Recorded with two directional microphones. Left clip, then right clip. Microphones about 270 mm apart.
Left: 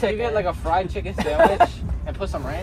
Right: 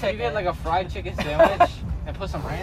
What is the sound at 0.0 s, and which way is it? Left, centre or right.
Speech, left.